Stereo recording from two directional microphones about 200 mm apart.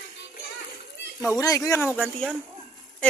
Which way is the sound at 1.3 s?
15° left (ahead or behind).